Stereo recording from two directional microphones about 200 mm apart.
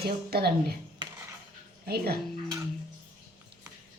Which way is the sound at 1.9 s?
50° right (ahead or behind).